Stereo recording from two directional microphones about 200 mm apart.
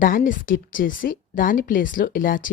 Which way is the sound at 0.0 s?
45° left (ahead or behind).